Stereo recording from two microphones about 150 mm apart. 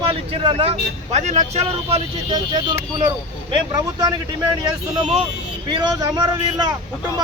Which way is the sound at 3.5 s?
30° right (ahead or behind).